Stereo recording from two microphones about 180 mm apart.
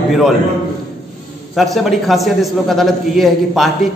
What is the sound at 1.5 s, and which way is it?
A man's voice, centre (ahead or behind).